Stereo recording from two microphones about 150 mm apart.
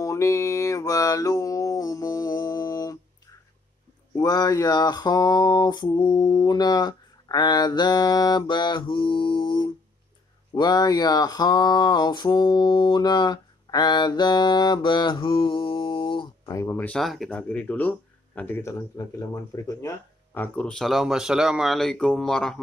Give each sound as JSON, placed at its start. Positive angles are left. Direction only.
{"t": 0.0, "sound": "mantra", "side_deg": 20}
{"t": 4.2, "sound": "speech", "side_deg": 25}
{"t": 16.5, "sound": "speech", "side_deg": 15}
{"t": 17.0, "sound": "speech", "side_deg": 0}
{"t": 20.3, "sound": "speech", "side_deg": 10}